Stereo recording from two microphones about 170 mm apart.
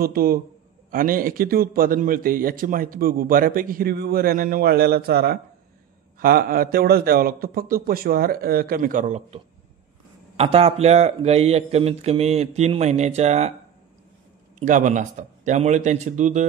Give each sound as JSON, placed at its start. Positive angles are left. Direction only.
{"t": 0.0, "sound": "a man's voice", "side_deg": -60}
{"t": 14.6, "sound": "a man's voice", "side_deg": -50}